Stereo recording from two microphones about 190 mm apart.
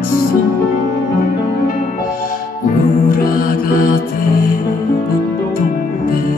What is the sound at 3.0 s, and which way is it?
Music, 45° left (ahead or behind).